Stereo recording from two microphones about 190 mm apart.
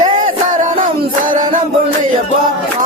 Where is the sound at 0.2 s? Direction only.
45° right (ahead or behind).